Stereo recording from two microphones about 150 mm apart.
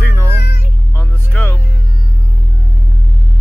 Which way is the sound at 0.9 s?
15° left (ahead or behind).